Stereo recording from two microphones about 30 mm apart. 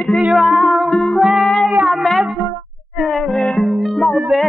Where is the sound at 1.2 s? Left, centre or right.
Centre.